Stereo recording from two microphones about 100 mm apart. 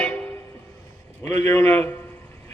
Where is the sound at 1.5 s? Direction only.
25° left (ahead or behind).